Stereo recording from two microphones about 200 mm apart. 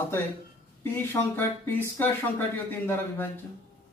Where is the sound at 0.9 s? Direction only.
10° left (ahead or behind).